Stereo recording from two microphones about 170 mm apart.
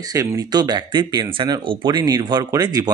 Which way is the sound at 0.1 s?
20° right (ahead or behind).